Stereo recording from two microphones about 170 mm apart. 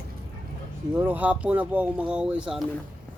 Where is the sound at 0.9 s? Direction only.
10° right (ahead or behind).